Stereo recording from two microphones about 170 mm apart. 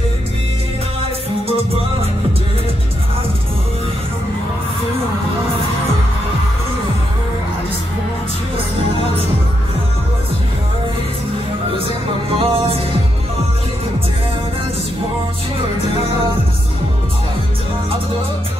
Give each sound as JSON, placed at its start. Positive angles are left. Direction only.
{"t": 12.4, "sound": "music", "side_deg": -35}